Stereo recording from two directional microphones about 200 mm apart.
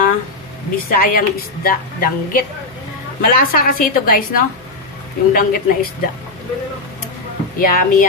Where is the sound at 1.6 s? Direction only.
45° left (ahead or behind).